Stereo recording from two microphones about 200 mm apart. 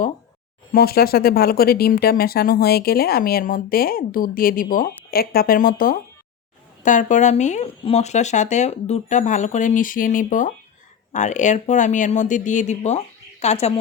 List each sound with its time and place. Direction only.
0.7 s speech: 50° left (ahead or behind); by 13.7 s 35° left (ahead or behind)